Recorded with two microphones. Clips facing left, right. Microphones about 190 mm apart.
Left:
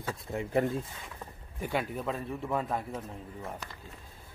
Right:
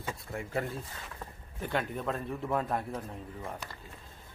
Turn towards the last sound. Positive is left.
turn(degrees=0)  # may be behind; listen again after turning